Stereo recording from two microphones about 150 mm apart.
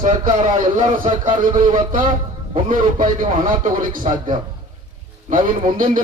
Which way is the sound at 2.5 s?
65° right (ahead or behind).